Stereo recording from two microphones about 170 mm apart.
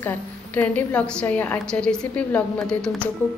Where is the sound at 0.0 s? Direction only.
10° left (ahead or behind).